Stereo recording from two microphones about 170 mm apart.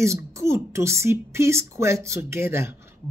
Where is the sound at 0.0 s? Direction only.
15° right (ahead or behind).